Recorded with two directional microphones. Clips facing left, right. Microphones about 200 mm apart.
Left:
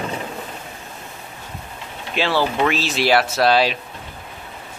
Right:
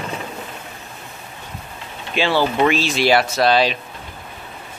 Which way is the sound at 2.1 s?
Centre (ahead or behind).